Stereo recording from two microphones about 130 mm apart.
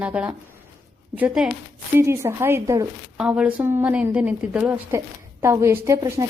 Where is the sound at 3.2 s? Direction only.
10° right (ahead or behind).